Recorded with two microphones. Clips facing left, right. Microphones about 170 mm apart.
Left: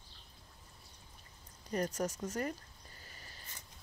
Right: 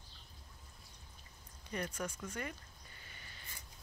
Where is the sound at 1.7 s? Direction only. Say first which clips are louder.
Left 6 dB; 40° left (ahead or behind).